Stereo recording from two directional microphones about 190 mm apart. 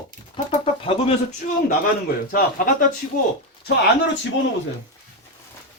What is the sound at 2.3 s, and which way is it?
Speech, 50° left (ahead or behind).